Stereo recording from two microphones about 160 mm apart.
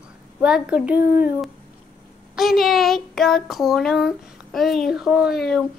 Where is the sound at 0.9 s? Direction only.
70° left (ahead or behind).